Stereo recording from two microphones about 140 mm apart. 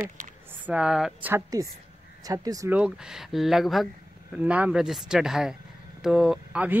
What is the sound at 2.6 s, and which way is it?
Speech, 10° right (ahead or behind).